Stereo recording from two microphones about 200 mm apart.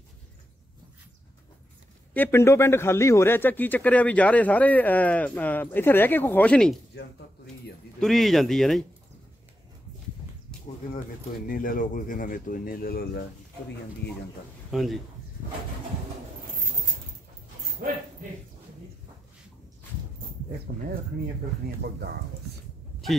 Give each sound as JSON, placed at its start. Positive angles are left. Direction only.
{"t": 2.1, "sound": "speech", "side_deg": 10}
{"t": 8.0, "sound": "speech", "side_deg": 0}
{"t": 11.4, "sound": "speech", "side_deg": 45}
{"t": 14.7, "sound": "speech", "side_deg": 0}